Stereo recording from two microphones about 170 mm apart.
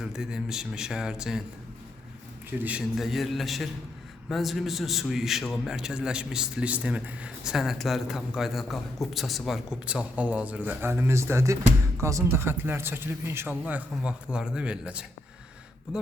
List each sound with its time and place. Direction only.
0.0 s a man's voice: 5° right (ahead or behind)
2.6 s a man's voice: 5° right (ahead or behind)